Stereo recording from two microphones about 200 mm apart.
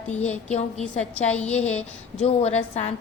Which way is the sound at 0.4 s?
35° left (ahead or behind).